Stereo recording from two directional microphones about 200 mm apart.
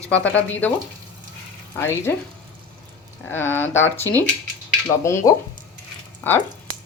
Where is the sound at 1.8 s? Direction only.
10° left (ahead or behind).